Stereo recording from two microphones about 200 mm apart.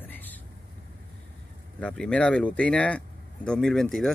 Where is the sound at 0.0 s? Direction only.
10° left (ahead or behind).